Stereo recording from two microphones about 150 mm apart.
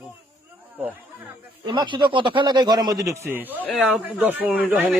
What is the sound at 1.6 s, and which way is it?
A man's voice, 30° right (ahead or behind).